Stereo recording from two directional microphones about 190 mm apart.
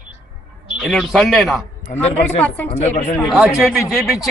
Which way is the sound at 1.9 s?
45° left (ahead or behind).